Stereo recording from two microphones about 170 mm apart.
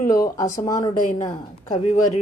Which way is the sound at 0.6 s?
20° left (ahead or behind).